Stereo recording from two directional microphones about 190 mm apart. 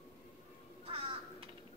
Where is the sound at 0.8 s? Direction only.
30° right (ahead or behind).